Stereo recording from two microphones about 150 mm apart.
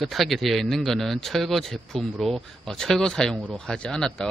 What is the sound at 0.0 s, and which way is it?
Speech, centre (ahead or behind).